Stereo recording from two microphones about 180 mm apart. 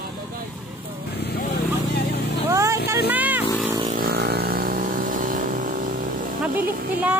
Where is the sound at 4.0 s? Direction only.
60° right (ahead or behind).